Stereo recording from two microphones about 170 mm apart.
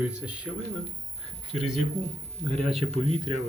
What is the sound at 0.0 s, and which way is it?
Speech, 5° right (ahead or behind).